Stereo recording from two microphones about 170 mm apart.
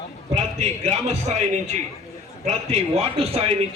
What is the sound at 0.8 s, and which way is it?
A man's voice, 40° right (ahead or behind).